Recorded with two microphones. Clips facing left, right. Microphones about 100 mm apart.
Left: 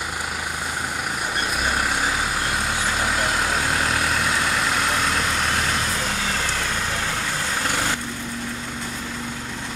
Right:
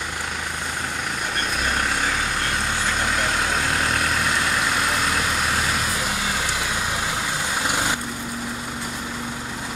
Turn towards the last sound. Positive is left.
turn(degrees=-15)  # may be behind; listen again after turning